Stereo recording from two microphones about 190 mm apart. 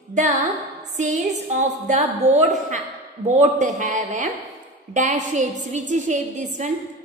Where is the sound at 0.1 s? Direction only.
40° right (ahead or behind).